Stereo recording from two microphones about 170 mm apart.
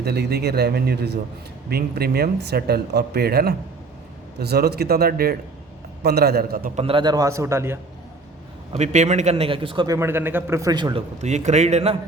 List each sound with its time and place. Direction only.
0.0 s a man's voice: 70° right (ahead or behind)
6.7 s a man's voice: 30° right (ahead or behind); by 7.8 s 15° right (ahead or behind)
8.7 s a man's voice: 40° right (ahead or behind); by 11.0 s 25° right (ahead or behind)
11.2 s a man's voice: 40° right (ahead or behind)